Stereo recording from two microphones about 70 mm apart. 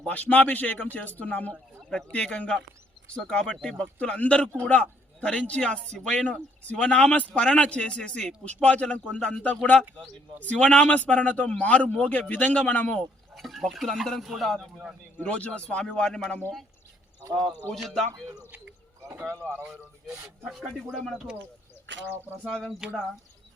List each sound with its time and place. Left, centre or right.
0.0 s a man's voice: left
13.3 s speech: centre
15.2 s a man's voice: centre
17.7 s speech: centre
20.4 s speech: centre
22.4 s a man's voice: centre